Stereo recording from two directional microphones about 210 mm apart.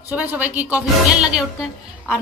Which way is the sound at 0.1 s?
5° right (ahead or behind).